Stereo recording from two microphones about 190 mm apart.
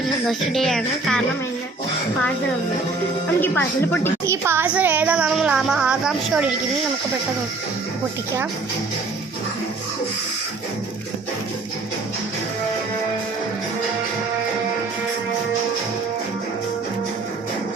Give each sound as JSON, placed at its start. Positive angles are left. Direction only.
{"t": 0.0, "sound": "music", "side_deg": 0}
{"t": 3.4, "sound": "speech", "side_deg": 10}
{"t": 4.3, "sound": "music", "side_deg": -15}